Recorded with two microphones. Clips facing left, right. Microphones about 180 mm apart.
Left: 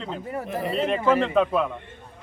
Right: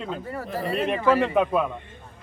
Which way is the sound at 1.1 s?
15° right (ahead or behind).